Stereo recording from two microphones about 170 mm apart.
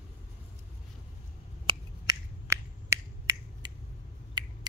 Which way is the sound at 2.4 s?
15° right (ahead or behind).